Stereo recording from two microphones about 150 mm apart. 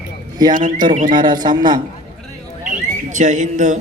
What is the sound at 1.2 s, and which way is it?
Speech, 30° right (ahead or behind).